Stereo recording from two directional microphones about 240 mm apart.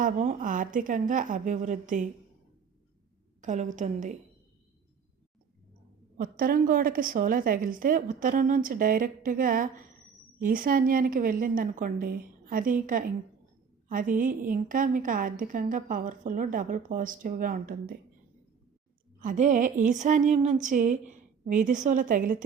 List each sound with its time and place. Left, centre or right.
0.0 s a woman's voice: right
3.4 s a woman's voice: right
6.1 s a woman's voice: right
19.2 s a woman's voice: right